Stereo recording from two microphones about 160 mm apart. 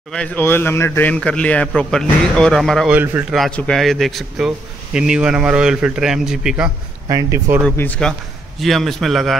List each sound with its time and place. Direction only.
0.1 s a man's voice: 10° left (ahead or behind)
3.0 s speech: 10° right (ahead or behind)
3.3 s speech: 5° left (ahead or behind)
7.1 s speech: 20° right (ahead or behind)
7.7 s speech: 10° left (ahead or behind)